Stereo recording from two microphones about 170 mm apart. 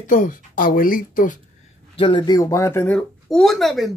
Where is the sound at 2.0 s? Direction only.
30° left (ahead or behind); by 3.9 s centre (ahead or behind).